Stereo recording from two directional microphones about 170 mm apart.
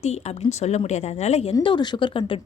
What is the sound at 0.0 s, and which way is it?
A woman's voice, 40° left (ahead or behind).